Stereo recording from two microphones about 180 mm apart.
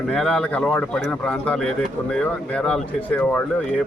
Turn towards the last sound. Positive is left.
turn(degrees=10)  # may be behind; listen again after turning